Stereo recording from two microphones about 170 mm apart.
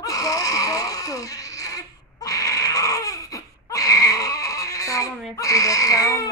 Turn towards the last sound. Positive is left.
turn(degrees=20)  # may be behind; listen again after turning